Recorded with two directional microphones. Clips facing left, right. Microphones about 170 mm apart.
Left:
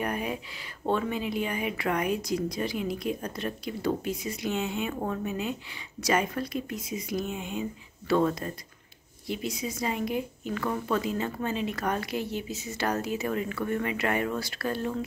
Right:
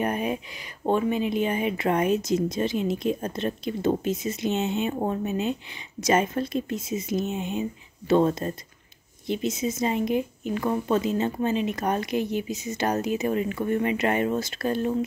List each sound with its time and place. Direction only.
0.0 s speech: 20° right (ahead or behind)